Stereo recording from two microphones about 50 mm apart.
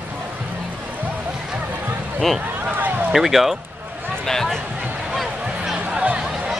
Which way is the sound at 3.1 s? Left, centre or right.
Centre.